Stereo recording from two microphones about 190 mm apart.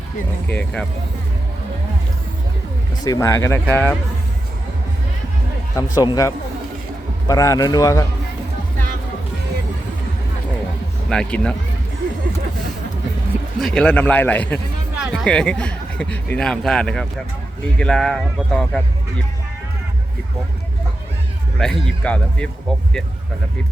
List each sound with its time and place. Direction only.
0.4 s a man's voice: 5° left (ahead or behind)
3.0 s speech: 15° left (ahead or behind)
5.7 s speech: 20° left (ahead or behind)
11.1 s a man's voice: 5° left (ahead or behind)
13.6 s a man's voice: centre (ahead or behind)
21.6 s a man's voice: 5° left (ahead or behind)